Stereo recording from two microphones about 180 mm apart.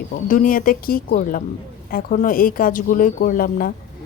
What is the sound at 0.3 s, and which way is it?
Speech, 50° left (ahead or behind).